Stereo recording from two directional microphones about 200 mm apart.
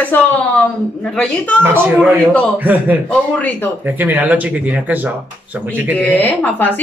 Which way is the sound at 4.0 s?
10° right (ahead or behind).